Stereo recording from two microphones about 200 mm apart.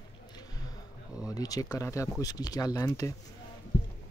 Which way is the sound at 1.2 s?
20° left (ahead or behind).